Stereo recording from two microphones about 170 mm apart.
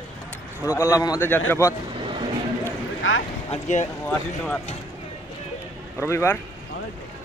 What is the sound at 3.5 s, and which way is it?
Speech, 45° left (ahead or behind).